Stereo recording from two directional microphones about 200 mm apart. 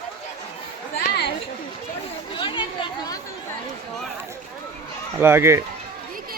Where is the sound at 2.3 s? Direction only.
25° left (ahead or behind).